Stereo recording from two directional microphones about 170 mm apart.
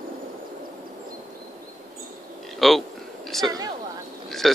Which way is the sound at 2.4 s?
Centre (ahead or behind).